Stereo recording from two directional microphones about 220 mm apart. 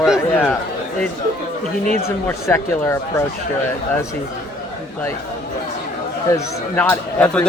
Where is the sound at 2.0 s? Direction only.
10° left (ahead or behind).